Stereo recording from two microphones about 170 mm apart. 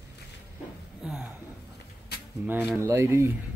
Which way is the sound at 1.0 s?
5° right (ahead or behind).